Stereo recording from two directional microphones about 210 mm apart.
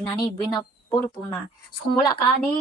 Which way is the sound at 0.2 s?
15° left (ahead or behind).